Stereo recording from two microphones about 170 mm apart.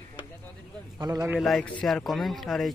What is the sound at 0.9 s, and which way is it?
Speech, 20° right (ahead or behind).